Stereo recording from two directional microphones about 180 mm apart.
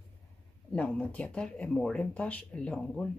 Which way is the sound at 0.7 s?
5° left (ahead or behind).